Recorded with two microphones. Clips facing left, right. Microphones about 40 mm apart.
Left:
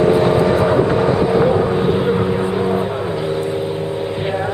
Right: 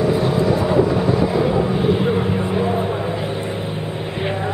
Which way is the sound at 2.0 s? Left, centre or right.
Centre.